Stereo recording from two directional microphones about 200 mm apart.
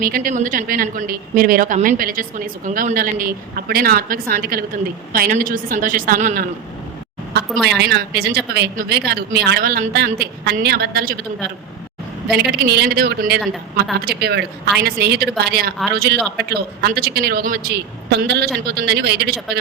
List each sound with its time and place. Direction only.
0.0 s a woman's voice: 45° right (ahead or behind)
7.8 s a woman's voice: 55° right (ahead or behind)
12.4 s a woman's voice: 55° right (ahead or behind)